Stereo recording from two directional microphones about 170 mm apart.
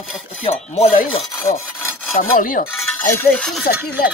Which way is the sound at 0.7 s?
40° left (ahead or behind).